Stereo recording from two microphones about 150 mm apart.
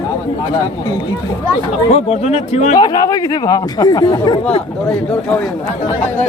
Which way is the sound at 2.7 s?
25° left (ahead or behind).